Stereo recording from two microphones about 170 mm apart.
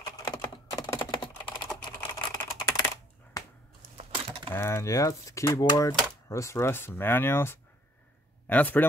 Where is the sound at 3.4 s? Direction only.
20° left (ahead or behind).